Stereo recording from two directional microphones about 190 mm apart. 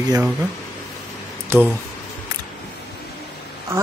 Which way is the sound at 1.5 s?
10° right (ahead or behind).